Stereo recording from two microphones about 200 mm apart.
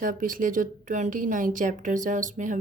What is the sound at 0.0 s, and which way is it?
A woman's voice, 40° right (ahead or behind).